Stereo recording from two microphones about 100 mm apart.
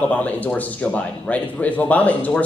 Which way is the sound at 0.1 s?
15° left (ahead or behind).